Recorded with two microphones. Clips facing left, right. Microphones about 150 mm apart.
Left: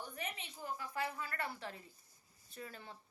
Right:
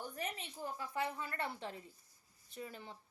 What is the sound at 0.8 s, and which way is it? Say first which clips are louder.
A woman's voice: right 2 dB; 25° right (ahead or behind).